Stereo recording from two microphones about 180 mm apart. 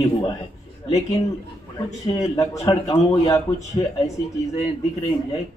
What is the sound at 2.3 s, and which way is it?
A man's voice, 20° left (ahead or behind).